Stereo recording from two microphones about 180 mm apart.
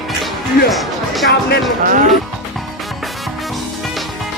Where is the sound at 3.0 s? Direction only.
Centre (ahead or behind).